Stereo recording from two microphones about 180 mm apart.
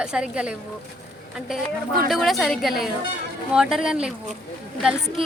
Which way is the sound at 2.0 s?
Centre (ahead or behind).